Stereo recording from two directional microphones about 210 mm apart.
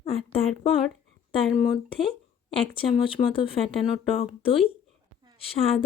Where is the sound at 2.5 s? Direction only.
25° left (ahead or behind).